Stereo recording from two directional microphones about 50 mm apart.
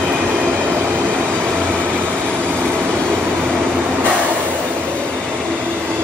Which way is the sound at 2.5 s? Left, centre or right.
Right.